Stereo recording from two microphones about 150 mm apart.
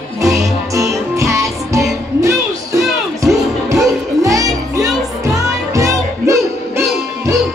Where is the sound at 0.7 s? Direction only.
20° right (ahead or behind).